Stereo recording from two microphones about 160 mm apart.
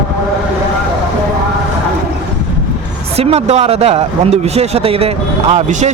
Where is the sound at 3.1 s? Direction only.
40° right (ahead or behind).